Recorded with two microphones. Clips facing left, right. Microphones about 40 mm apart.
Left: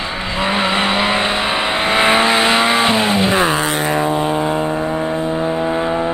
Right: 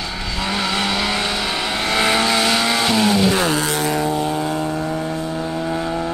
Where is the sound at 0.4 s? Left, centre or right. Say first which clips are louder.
Left 5 dB; left.